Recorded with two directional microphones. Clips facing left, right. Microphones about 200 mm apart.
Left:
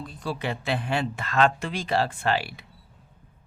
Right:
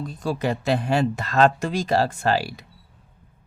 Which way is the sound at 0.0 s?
45° right (ahead or behind).